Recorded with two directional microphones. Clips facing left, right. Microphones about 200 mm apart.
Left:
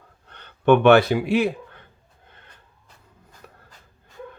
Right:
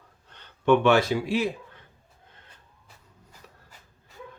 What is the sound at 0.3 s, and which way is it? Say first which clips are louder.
Speech: left 4 dB; 60° left (ahead or behind).